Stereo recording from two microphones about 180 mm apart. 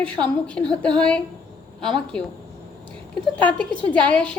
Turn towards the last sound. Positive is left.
turn(degrees=5)  # may be behind; listen again after turning